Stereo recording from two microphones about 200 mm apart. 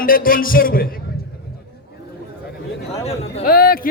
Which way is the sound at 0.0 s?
45° left (ahead or behind).